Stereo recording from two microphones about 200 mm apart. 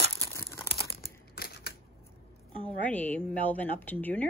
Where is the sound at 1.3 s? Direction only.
50° left (ahead or behind).